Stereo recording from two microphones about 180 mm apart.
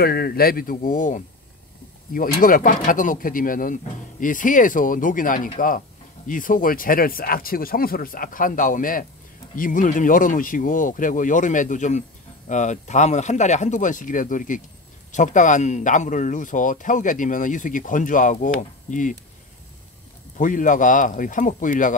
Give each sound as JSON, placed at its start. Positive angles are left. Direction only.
{"t": 0.0, "sound": "speech", "side_deg": 60}
{"t": 20.3, "sound": "speech", "side_deg": 45}